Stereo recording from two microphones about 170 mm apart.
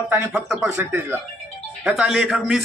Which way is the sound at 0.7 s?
15° right (ahead or behind).